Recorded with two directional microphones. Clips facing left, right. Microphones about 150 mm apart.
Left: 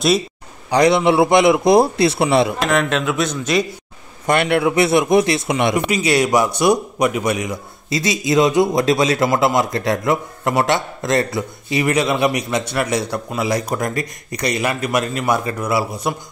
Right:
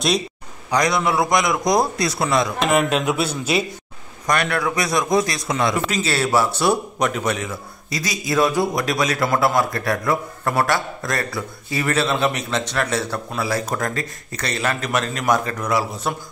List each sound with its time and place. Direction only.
0.7 s a man's voice: 30° left (ahead or behind)
2.7 s a man's voice: 10° right (ahead or behind)
4.3 s a man's voice: 25° left (ahead or behind); by 7.5 s 10° left (ahead or behind)
7.9 s a man's voice: 25° left (ahead or behind)